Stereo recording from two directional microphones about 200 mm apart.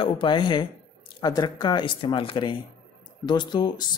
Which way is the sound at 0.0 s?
25° left (ahead or behind).